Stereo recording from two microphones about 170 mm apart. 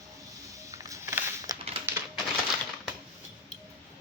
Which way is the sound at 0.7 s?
20° right (ahead or behind).